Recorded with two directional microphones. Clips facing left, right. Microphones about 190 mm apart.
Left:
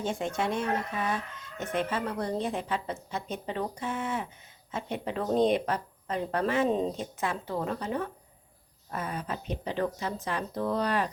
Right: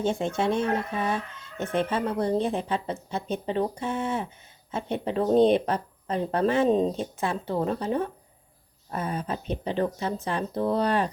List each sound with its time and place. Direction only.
0.0 s speech: 25° right (ahead or behind)